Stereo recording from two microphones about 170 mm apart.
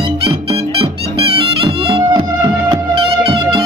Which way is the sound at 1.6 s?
30° right (ahead or behind).